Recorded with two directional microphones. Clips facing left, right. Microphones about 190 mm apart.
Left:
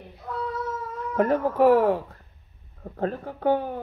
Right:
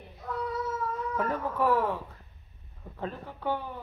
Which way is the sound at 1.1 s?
75° left (ahead or behind).